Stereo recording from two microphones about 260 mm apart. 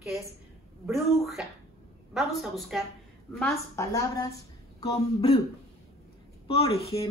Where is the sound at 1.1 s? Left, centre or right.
Centre.